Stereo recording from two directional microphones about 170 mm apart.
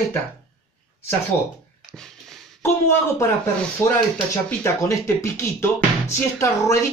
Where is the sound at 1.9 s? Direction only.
Centre (ahead or behind).